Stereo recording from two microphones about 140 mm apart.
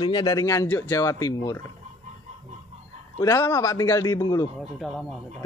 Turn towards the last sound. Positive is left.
turn(degrees=0)  # may be behind; listen again after turning